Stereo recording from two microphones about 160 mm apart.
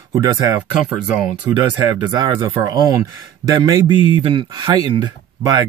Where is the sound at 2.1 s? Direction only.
25° right (ahead or behind).